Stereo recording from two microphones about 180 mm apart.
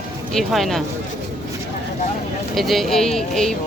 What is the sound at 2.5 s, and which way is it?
Speech, centre (ahead or behind).